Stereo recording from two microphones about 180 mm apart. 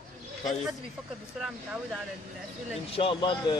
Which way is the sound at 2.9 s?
30° left (ahead or behind).